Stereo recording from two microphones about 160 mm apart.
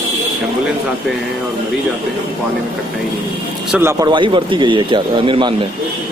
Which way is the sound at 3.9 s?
25° right (ahead or behind).